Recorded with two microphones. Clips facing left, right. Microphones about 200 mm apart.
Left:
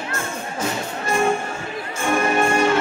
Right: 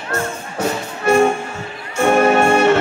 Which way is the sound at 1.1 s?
70° right (ahead or behind).